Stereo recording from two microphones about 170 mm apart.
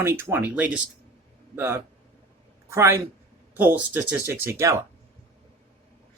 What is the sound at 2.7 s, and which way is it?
Speech, 15° right (ahead or behind).